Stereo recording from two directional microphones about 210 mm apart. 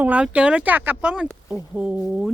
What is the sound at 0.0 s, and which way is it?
Speech, 5° right (ahead or behind).